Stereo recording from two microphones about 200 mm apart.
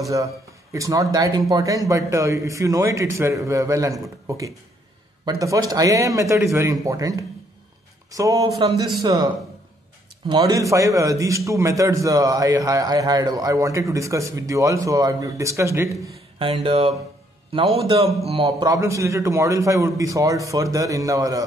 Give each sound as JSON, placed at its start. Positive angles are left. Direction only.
{"t": 0.7, "sound": "a man's voice", "side_deg": -15}
{"t": 16.3, "sound": "a man's voice", "side_deg": -25}